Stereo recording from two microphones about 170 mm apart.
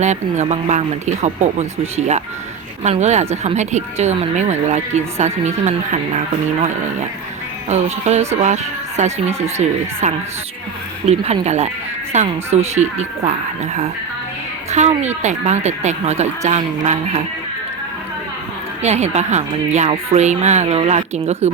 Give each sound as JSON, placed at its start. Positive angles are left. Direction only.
{"t": 0.0, "sound": "speech", "side_deg": -40}
{"t": 7.7, "sound": "a woman's voice", "side_deg": -40}
{"t": 14.7, "sound": "speech", "side_deg": -40}
{"t": 18.8, "sound": "speech", "side_deg": -40}